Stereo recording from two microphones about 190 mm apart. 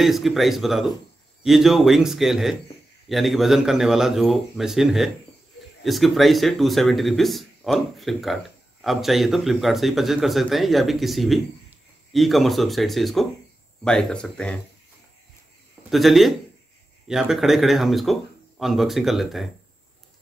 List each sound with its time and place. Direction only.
0.0 s speech: centre (ahead or behind)
15.9 s speech: centre (ahead or behind)